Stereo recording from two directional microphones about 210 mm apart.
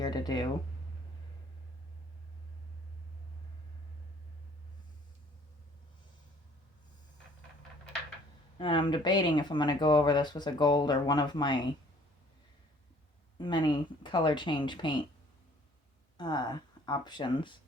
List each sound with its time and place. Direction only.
0.0 s speech: 20° left (ahead or behind)
8.5 s speech: 25° left (ahead or behind)
13.4 s speech: 20° left (ahead or behind)
16.1 s speech: 20° left (ahead or behind)